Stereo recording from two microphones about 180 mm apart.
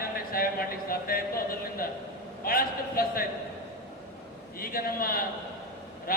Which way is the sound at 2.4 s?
55° left (ahead or behind).